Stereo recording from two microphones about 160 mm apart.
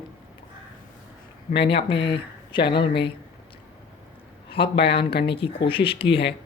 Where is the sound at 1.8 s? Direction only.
30° left (ahead or behind).